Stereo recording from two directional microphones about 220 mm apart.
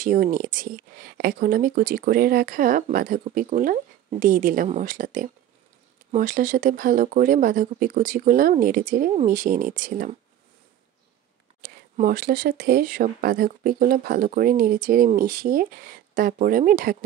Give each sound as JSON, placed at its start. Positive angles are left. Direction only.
{"t": 0.0, "sound": "speech", "side_deg": -40}
{"t": 11.6, "sound": "speech", "side_deg": -40}